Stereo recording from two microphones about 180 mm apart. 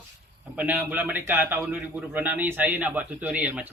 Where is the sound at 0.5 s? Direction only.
10° right (ahead or behind).